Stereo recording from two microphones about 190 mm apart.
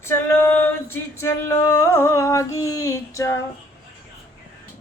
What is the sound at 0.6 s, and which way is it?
Male singing, 10° left (ahead or behind).